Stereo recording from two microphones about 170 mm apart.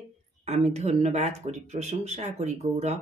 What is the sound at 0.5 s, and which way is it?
Speech, 40° right (ahead or behind).